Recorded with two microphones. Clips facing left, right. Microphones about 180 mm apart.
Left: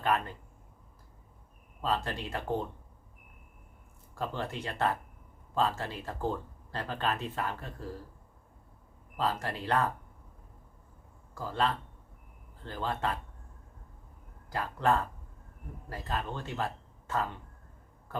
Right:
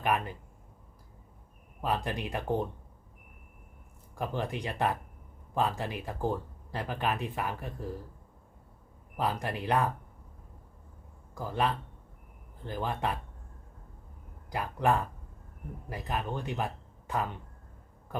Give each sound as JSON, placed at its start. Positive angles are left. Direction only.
{"t": 0.0, "sound": "speech", "side_deg": -15}
{"t": 1.8, "sound": "speech", "side_deg": -15}
{"t": 4.1, "sound": "speech", "side_deg": -15}
{"t": 9.1, "sound": "speech", "side_deg": -15}
{"t": 11.3, "sound": "speech", "side_deg": -15}
{"t": 14.5, "sound": "speech", "side_deg": -15}